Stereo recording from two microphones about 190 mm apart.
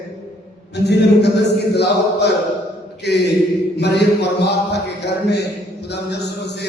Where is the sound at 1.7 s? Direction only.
60° left (ahead or behind).